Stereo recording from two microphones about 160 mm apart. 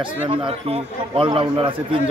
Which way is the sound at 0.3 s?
35° right (ahead or behind).